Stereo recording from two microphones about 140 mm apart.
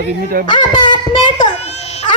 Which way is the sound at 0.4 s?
80° right.